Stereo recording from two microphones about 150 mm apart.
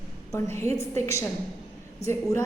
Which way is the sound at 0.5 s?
20° left (ahead or behind).